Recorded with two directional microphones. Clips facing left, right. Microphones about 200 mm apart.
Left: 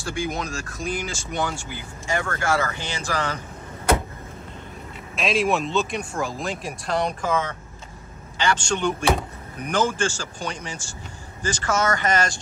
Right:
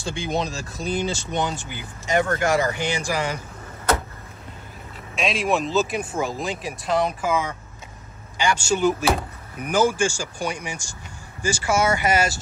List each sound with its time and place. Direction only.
0.0 s speech: 30° right (ahead or behind); by 3.3 s 15° right (ahead or behind)
5.1 s speech: centre (ahead or behind)